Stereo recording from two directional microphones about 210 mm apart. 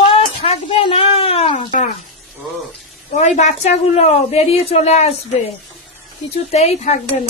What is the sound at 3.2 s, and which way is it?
A woman's voice, 35° left (ahead or behind).